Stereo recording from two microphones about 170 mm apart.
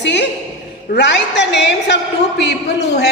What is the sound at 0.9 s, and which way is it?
A woman's voice, 90° left.